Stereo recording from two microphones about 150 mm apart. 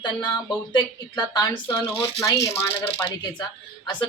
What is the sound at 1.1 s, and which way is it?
Speech, 30° left (ahead or behind).